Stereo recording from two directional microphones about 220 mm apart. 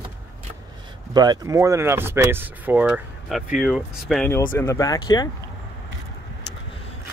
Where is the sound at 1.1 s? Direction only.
20° right (ahead or behind); by 4.3 s centre (ahead or behind).